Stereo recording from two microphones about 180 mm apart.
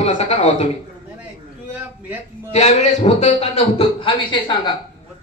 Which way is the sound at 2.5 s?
40° left (ahead or behind).